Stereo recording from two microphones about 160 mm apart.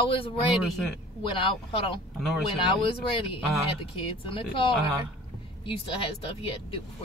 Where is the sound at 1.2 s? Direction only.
35° left (ahead or behind).